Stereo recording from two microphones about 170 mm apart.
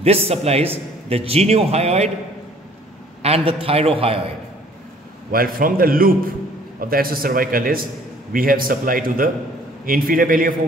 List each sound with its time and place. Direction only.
0.0 s a man's voice: 35° right (ahead or behind)
3.2 s a man's voice: 35° right (ahead or behind)
5.3 s a man's voice: 60° right (ahead or behind)